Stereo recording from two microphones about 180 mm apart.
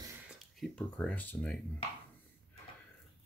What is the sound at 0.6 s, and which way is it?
Speech, 5° left (ahead or behind).